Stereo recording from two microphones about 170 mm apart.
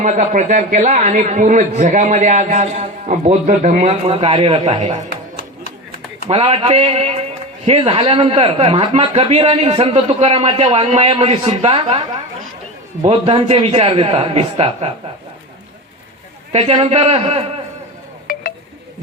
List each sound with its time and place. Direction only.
0.0 s a man's voice: 45° right (ahead or behind)
6.2 s a man's voice: 35° right (ahead or behind)
13.1 s a man's voice: 35° right (ahead or behind)
16.5 s a man's voice: 35° right (ahead or behind)